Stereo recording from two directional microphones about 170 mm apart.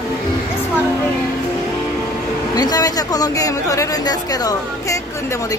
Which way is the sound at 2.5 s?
20° left (ahead or behind).